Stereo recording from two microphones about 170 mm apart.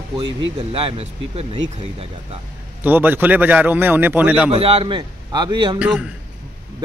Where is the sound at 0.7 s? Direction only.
35° right (ahead or behind).